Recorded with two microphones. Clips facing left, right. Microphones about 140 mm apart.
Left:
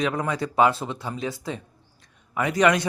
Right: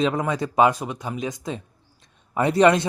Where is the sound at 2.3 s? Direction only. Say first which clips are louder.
Right 4 dB; 30° right (ahead or behind).